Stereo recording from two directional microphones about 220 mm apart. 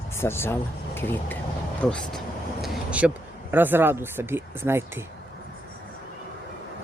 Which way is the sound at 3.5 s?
10° right (ahead or behind).